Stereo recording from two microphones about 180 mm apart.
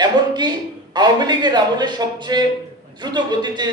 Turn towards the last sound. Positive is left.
turn(degrees=-25)  # may be behind; listen again after turning